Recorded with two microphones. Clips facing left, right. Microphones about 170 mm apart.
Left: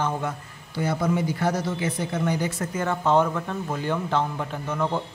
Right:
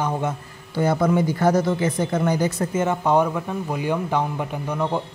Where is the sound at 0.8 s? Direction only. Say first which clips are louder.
Right 5 dB; 55° right (ahead or behind).